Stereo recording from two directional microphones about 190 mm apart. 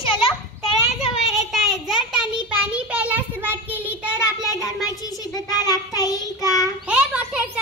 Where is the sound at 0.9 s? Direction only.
5° right (ahead or behind).